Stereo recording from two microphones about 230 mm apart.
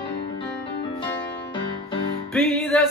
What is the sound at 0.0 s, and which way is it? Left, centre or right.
Music, left.